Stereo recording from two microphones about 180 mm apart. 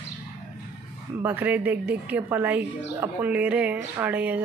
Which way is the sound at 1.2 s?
10° right (ahead or behind).